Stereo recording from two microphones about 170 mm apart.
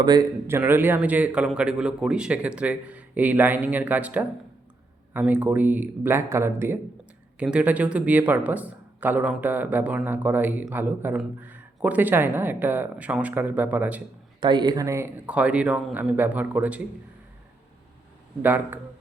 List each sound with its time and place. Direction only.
0.0 s speech: 25° right (ahead or behind)
0.4 s speech: 15° right (ahead or behind)
14.4 s speech: 25° right (ahead or behind); by 16.8 s 10° right (ahead or behind)
18.4 s speech: 10° right (ahead or behind)